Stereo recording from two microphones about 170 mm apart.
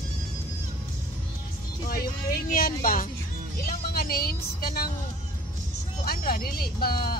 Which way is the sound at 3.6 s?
60° left (ahead or behind).